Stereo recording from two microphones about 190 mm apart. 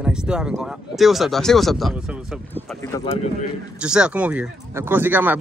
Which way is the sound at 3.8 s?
5° right (ahead or behind).